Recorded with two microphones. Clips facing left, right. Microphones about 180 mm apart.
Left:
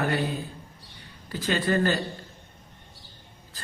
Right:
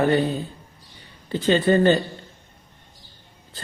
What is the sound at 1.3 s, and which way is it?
Speech, 25° right (ahead or behind).